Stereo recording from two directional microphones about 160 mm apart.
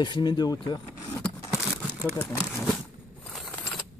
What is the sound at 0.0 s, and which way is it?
Speech, 30° left (ahead or behind).